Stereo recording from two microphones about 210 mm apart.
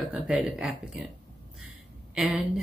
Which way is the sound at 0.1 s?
5° right (ahead or behind).